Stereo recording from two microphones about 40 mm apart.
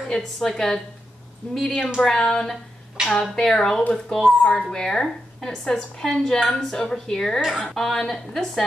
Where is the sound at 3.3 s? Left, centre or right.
Centre.